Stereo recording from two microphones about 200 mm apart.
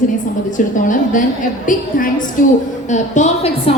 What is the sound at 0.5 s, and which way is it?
Speech, 40° left (ahead or behind).